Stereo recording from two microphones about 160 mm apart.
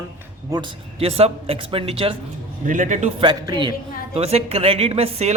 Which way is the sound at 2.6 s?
55° right (ahead or behind).